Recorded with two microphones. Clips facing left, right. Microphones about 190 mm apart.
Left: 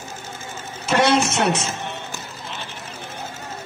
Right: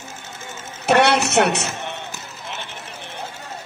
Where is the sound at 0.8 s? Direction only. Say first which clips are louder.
Right 1 dB; 65° right (ahead or behind).